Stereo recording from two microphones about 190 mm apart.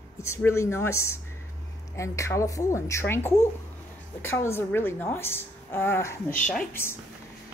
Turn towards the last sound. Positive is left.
turn(degrees=10)  # may be behind; listen again after turning